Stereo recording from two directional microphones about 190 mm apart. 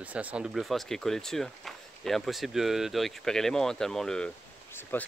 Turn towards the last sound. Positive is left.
turn(degrees=10)  # may be behind; listen again after turning